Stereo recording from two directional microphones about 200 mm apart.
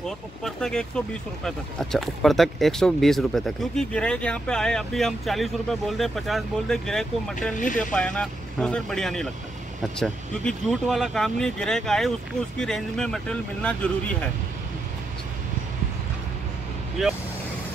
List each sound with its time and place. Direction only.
0.0 s speech: centre (ahead or behind)
7.5 s speech: 40° left (ahead or behind)
7.9 s speech: 5° left (ahead or behind)